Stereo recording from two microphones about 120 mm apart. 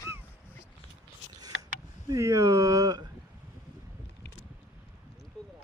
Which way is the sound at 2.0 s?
25° right (ahead or behind).